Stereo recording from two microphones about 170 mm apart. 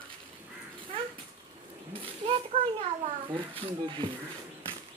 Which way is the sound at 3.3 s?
30° right (ahead or behind).